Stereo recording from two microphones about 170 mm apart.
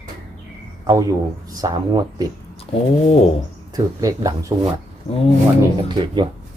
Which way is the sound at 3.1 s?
35° left (ahead or behind).